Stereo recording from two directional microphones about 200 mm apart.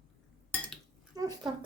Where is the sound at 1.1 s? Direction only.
20° right (ahead or behind).